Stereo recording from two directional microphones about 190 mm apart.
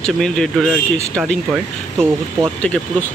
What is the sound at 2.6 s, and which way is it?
Speech, 5° left (ahead or behind).